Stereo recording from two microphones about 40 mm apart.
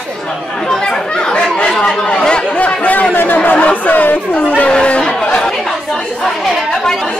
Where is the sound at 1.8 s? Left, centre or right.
Left.